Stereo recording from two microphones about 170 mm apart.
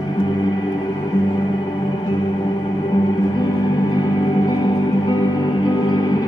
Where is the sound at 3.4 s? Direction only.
25° left (ahead or behind).